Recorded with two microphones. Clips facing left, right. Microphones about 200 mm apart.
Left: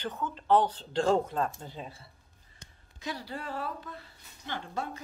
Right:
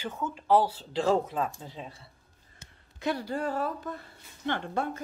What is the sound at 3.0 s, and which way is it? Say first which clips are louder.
A woman's voice: right 8 dB; 55° right (ahead or behind).